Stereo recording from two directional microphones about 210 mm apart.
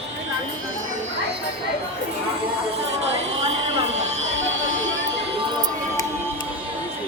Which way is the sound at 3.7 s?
30° right (ahead or behind).